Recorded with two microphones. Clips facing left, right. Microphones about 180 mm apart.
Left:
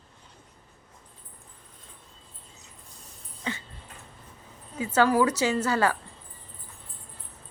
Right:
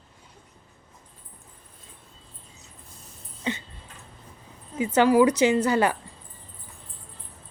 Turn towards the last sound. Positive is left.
turn(degrees=-20)  # may be behind; listen again after turning